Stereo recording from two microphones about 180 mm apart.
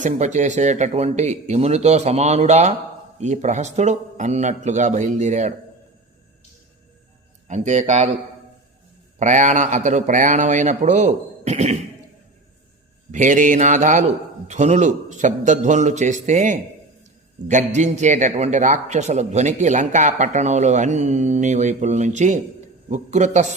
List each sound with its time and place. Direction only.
0.0 s speech: 40° right (ahead or behind)
7.4 s speech: 40° right (ahead or behind)
9.1 s a man's voice: 40° right (ahead or behind)
13.1 s a man's voice: 45° right (ahead or behind)
17.7 s speech: 40° right (ahead or behind)